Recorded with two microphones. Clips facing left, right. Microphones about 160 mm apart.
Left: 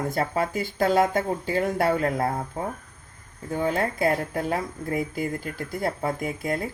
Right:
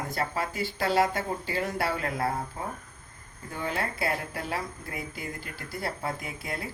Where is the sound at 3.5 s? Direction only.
45° left (ahead or behind).